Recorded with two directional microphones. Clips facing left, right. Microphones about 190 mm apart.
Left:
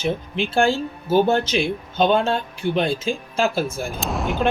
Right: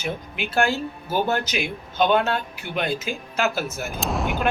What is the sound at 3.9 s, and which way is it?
Speech, centre (ahead or behind).